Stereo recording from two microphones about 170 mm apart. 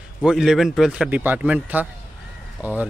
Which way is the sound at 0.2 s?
Centre (ahead or behind).